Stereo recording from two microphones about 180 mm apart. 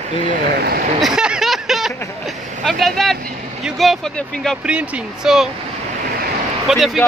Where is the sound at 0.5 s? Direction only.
60° right (ahead or behind).